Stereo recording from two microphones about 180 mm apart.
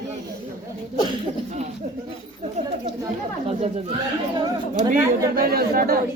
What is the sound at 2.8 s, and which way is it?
Speech, 30° right (ahead or behind).